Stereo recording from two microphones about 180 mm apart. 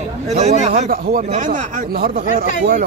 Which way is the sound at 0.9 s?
50° right (ahead or behind).